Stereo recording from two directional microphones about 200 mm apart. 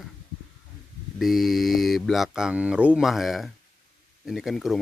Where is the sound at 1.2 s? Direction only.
Centre (ahead or behind).